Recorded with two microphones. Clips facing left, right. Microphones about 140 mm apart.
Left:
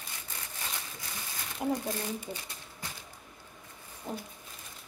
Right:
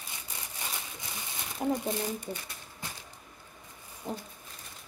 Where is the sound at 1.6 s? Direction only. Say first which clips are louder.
Right 1 dB; 5° left (ahead or behind).